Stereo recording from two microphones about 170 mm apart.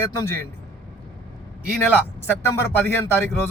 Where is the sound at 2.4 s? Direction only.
15° left (ahead or behind).